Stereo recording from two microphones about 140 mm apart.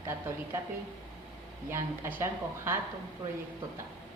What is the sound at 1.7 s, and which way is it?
A woman's voice, 15° right (ahead or behind).